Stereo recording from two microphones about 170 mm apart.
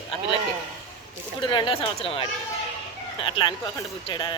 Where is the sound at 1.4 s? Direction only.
30° left (ahead or behind).